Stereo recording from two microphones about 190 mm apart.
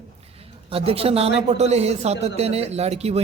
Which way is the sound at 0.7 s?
30° right (ahead or behind).